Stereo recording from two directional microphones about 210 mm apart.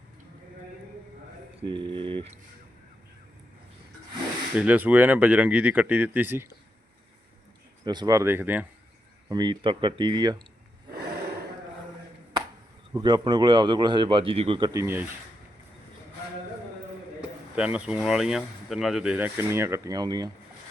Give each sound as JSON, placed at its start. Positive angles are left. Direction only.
{"t": 1.6, "sound": "speech", "side_deg": -25}
{"t": 4.5, "sound": "speech", "side_deg": -5}
{"t": 7.9, "sound": "speech", "side_deg": -15}
{"t": 9.3, "sound": "speech", "side_deg": -20}
{"t": 12.9, "sound": "speech", "side_deg": -20}
{"t": 17.2, "sound": "speech", "side_deg": -5}